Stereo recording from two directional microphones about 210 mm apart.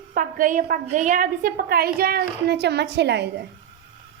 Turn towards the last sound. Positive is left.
turn(degrees=-55)  # may be behind; listen again after turning